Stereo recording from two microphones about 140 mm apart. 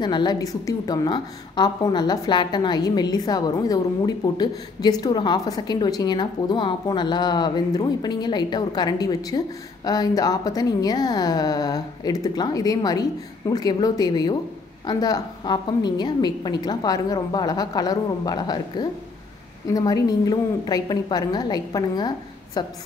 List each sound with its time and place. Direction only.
0.0 s a woman's voice: 30° left (ahead or behind)